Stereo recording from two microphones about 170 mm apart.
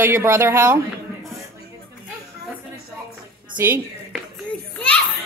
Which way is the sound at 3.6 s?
15° right (ahead or behind).